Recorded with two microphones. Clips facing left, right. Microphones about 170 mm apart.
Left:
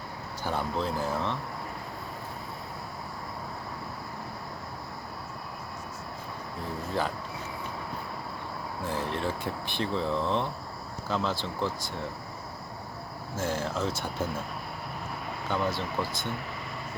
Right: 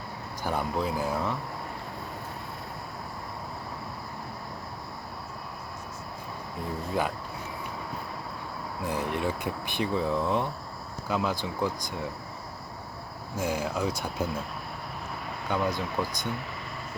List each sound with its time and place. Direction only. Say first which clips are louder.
0.4 s speech: right 1 dB; 10° right (ahead or behind)
8.9 s speech: right 2 dB; 15° right (ahead or behind)
13.3 s speech: right 1 dB; centre (ahead or behind)
15.4 s speech: right 1 dB; centre (ahead or behind)